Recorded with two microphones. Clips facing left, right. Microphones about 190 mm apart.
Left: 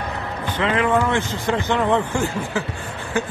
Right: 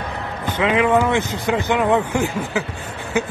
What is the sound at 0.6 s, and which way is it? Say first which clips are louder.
A man's voice: right 3 dB; 15° right (ahead or behind).